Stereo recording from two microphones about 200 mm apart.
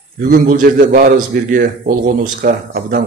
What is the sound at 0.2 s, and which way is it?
A man's voice, 45° right (ahead or behind).